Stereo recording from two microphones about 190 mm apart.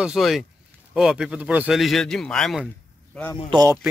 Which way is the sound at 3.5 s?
20° right (ahead or behind).